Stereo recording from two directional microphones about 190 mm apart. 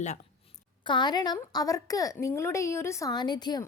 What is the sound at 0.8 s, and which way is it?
A woman's voice, 25° left (ahead or behind).